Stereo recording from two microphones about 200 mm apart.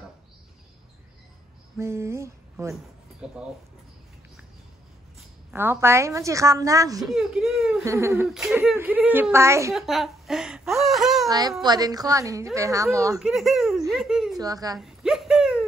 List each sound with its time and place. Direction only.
1.8 s a sound: 15° right (ahead or behind)
2.7 s speech: 5° right (ahead or behind)
5.5 s a woman's voice: 10° right (ahead or behind)
7.1 s speech: centre (ahead or behind)
7.8 s a woman's voice: 15° right (ahead or behind)
8.3 s a woman's voice: centre (ahead or behind)
9.8 s speech: centre (ahead or behind)
11.2 s a woman's voice: 20° right (ahead or behind)
13.2 s speech: centre (ahead or behind)
14.4 s a woman's voice: 20° right (ahead or behind)
14.8 s a sound: centre (ahead or behind)